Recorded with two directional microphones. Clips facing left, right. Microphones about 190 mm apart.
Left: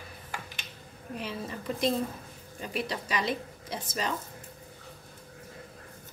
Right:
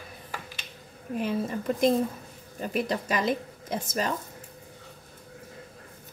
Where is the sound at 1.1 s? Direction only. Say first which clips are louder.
Right 8 dB; 50° right (ahead or behind).